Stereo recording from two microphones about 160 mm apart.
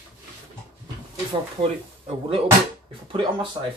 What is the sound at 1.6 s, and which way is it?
Speech, 35° right (ahead or behind).